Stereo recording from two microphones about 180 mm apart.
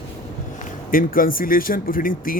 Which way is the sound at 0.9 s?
50° left (ahead or behind).